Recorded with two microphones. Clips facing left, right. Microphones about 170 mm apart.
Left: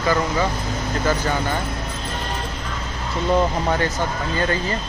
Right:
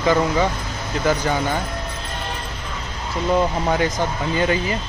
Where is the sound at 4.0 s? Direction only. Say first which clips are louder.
Right 2 dB; 15° right (ahead or behind).